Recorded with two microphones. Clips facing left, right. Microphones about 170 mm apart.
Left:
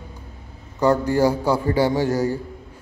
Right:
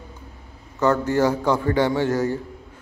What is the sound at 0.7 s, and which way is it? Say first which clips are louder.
Speech: left 1 dB; 10° left (ahead or behind).